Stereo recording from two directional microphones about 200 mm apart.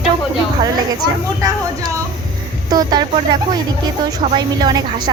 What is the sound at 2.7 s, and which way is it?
Speech, 20° right (ahead or behind).